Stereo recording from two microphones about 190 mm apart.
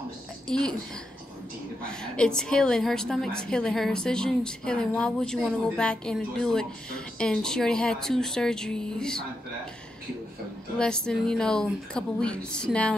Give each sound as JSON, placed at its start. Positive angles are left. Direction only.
{"t": 0.5, "sound": "a woman's voice", "side_deg": 5}
{"t": 1.9, "sound": "a woman's voice", "side_deg": 5}
{"t": 10.8, "sound": "a woman's voice", "side_deg": 5}